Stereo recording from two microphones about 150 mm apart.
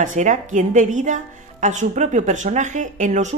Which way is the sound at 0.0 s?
55° right (ahead or behind).